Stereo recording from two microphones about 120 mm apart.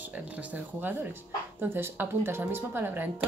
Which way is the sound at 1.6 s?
15° right (ahead or behind).